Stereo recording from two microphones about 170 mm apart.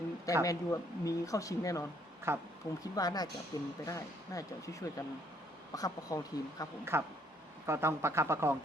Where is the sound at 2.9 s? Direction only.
20° left (ahead or behind).